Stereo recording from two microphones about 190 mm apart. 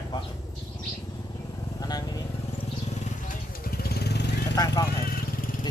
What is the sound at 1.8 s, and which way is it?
Vehicle, 20° left (ahead or behind).